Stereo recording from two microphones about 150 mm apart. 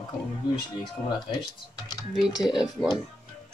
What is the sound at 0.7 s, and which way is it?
Speech, 30° left (ahead or behind).